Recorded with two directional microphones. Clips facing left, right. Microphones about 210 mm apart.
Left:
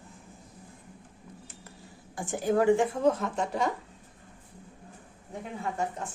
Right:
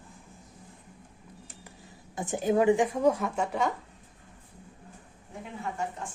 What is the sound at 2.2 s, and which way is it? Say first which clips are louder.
A woman's voice: right 1 dB; 20° right (ahead or behind).